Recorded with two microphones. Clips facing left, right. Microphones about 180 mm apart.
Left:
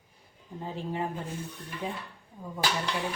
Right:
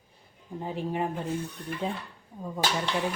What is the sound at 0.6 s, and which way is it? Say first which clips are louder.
A woman's voice: right 3 dB; 15° right (ahead or behind).